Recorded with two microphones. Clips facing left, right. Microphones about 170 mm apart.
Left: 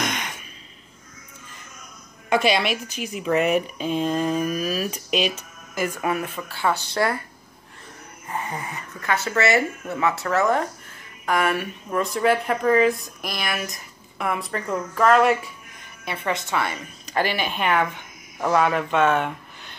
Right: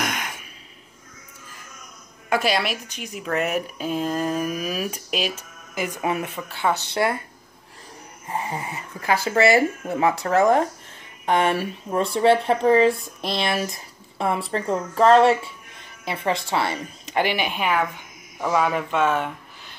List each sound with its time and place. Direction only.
0.0 s a sound: 5° right (ahead or behind)
2.2 s a woman's voice: 5° right (ahead or behind); by 7.2 s 25° right (ahead or behind)
8.3 s speech: 30° right (ahead or behind); by 19.3 s 5° right (ahead or behind)